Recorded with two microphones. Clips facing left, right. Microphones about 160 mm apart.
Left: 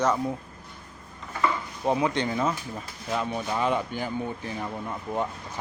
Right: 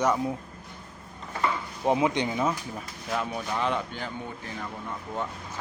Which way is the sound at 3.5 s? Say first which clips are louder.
Left 3 dB; 10° left (ahead or behind).